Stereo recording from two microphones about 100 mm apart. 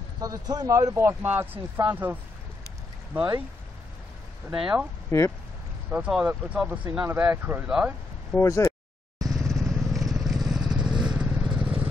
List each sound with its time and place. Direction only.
0.2 s speech: 40° right (ahead or behind); by 3.3 s 20° right (ahead or behind)
4.6 s speech: 10° right (ahead or behind)
5.1 s speech: 30° left (ahead or behind)
5.9 s speech: 10° right (ahead or behind)
8.4 s speech: 30° left (ahead or behind)
9.2 s vehicle: 35° right (ahead or behind)
9.5 s vehicle: centre (ahead or behind)